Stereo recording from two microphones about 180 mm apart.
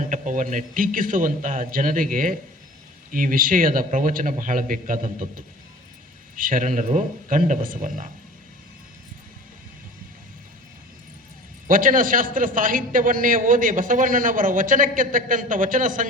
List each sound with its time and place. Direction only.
0.1 s a man's voice: 45° right (ahead or behind)
6.3 s a man's voice: 50° right (ahead or behind)
11.7 s a man's voice: 50° right (ahead or behind)